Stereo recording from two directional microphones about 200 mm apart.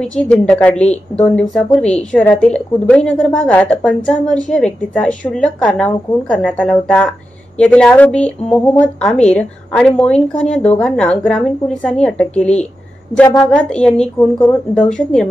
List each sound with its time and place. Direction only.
0.0 s speech: 5° left (ahead or behind)